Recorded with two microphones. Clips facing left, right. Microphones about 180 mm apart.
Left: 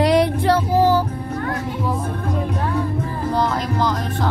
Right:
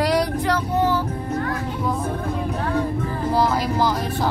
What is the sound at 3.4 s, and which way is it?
Music, 5° right (ahead or behind).